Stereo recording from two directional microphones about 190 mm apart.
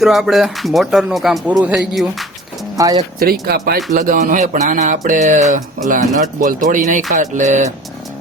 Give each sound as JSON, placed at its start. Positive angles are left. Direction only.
{"t": 0.0, "sound": "speech", "side_deg": 0}
{"t": 2.7, "sound": "speech", "side_deg": -20}
{"t": 3.4, "sound": "speech", "side_deg": -55}
{"t": 3.9, "sound": "a sound", "side_deg": -45}
{"t": 7.1, "sound": "music", "side_deg": -40}